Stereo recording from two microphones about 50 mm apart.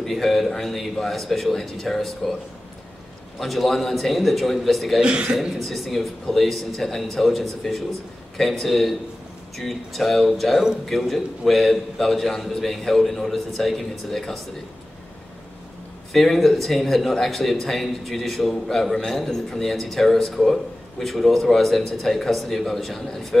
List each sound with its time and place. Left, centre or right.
0.0 s speech: centre
3.3 s speech: centre
5.0 s speech: right
5.6 s speech: centre
16.1 s speech: centre